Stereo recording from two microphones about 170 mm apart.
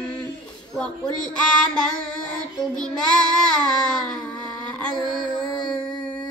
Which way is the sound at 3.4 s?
5° left (ahead or behind).